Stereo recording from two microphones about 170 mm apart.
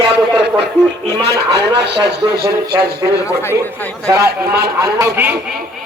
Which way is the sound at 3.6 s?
10° left (ahead or behind).